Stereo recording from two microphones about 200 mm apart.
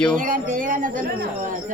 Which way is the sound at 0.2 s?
40° right (ahead or behind).